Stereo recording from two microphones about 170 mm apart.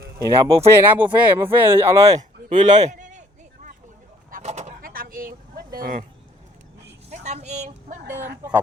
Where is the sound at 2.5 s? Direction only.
30° right (ahead or behind).